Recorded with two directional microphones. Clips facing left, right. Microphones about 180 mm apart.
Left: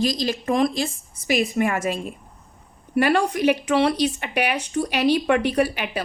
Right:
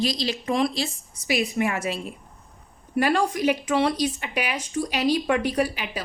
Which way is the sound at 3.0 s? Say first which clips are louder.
Left 3 dB; 65° left (ahead or behind).